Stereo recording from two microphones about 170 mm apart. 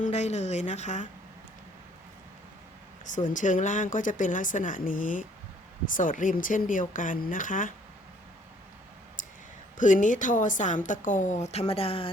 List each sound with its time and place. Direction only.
0.0 s speech: 40° left (ahead or behind)
3.0 s speech: 50° left (ahead or behind)
9.7 s speech: 50° left (ahead or behind); by 12.1 s 35° left (ahead or behind)